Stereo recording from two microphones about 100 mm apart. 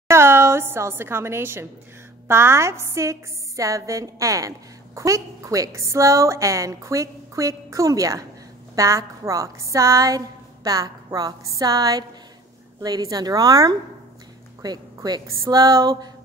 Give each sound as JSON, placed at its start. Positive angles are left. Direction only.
{"t": 0.1, "sound": "a woman's voice", "side_deg": -25}